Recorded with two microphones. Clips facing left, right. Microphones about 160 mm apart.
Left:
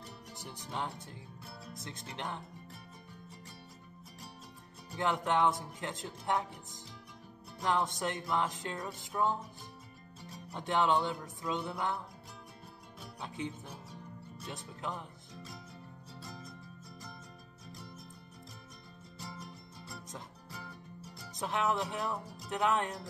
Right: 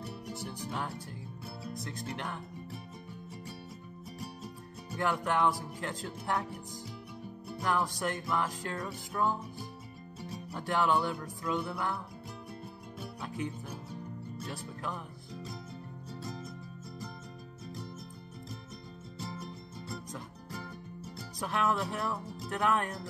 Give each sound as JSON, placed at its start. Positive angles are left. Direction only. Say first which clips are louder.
{"t": 0.4, "sound": "music", "louder": "right 1 dB", "side_deg": 20}
{"t": 2.1, "sound": "music", "louder": "right 1 dB", "side_deg": 20}
{"t": 4.9, "sound": "music", "louder": "even", "side_deg": 20}
{"t": 7.6, "sound": "music", "louder": "right 1 dB", "side_deg": 20}
{"t": 10.5, "sound": "music", "louder": "even", "side_deg": 20}
{"t": 14.5, "sound": "music", "louder": "even", "side_deg": 20}
{"t": 16.2, "sound": "music", "louder": "right 6 dB", "side_deg": -5}
{"t": 19.3, "sound": "music", "louder": "right 5 dB", "side_deg": -5}
{"t": 21.4, "sound": "music", "louder": "right 1 dB", "side_deg": 20}